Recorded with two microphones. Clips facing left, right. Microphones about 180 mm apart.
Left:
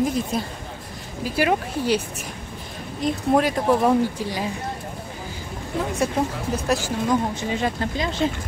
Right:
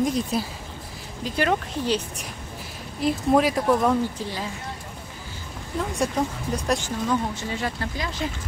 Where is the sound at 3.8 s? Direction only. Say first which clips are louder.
Left 3 dB; 15° left (ahead or behind).